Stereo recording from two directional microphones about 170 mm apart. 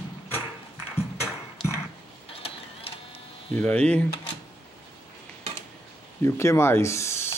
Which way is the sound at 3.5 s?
10° left (ahead or behind).